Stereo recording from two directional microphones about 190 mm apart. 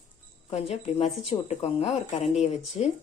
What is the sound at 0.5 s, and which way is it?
Speech, 35° left (ahead or behind).